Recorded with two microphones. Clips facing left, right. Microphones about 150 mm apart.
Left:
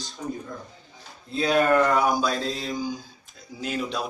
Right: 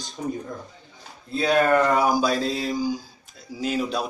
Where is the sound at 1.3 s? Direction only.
Centre (ahead or behind).